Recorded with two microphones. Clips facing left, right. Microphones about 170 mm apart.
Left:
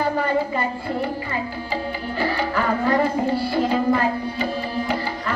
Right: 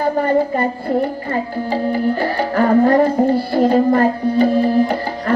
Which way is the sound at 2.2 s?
45° right (ahead or behind).